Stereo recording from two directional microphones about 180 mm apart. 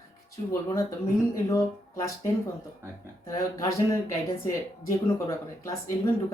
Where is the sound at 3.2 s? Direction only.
15° left (ahead or behind).